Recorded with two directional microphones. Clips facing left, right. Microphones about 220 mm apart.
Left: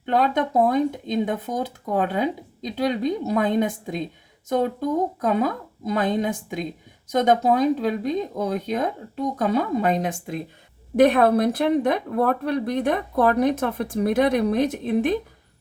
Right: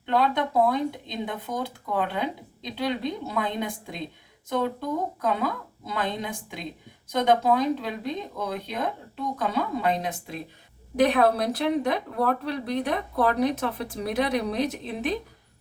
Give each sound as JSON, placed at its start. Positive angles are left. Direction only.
{"t": 0.1, "sound": "speech", "side_deg": 45}